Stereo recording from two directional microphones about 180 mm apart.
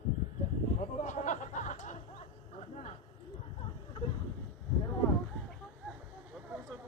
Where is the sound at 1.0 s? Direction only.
40° left (ahead or behind).